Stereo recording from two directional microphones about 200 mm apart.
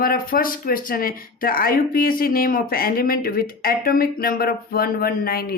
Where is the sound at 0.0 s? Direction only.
45° left (ahead or behind).